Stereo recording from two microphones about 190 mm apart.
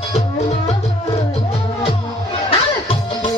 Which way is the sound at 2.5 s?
30° left (ahead or behind).